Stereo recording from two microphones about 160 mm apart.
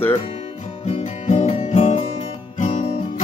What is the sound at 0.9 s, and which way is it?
Music, 45° left (ahead or behind).